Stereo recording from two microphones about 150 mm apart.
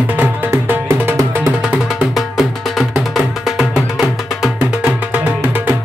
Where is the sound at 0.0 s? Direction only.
10° right (ahead or behind).